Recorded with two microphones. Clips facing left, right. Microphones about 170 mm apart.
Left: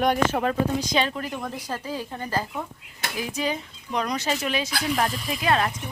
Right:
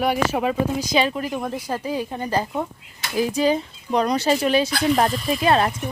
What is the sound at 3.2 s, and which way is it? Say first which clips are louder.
Speech: right 9 dB; 35° right (ahead or behind).